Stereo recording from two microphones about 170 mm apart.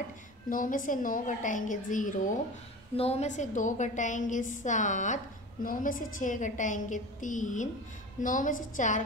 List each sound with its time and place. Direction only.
0.5 s a woman's voice: 50° left (ahead or behind)
3.0 s a woman's voice: 40° left (ahead or behind)